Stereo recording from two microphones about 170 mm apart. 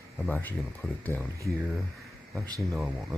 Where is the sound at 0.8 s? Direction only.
Centre (ahead or behind).